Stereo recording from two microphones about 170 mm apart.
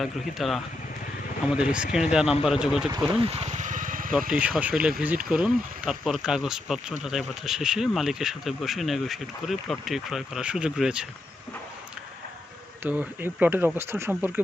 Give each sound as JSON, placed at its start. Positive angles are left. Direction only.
{"t": 0.0, "sound": "speech", "side_deg": 0}
{"t": 2.9, "sound": "vehicle", "side_deg": -35}
{"t": 4.3, "sound": "speech", "side_deg": -5}
{"t": 12.8, "sound": "speech", "side_deg": -10}